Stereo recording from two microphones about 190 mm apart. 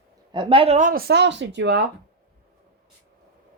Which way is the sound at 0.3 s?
25° right (ahead or behind).